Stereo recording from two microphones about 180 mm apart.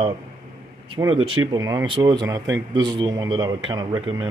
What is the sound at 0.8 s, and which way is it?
Speech, 25° right (ahead or behind).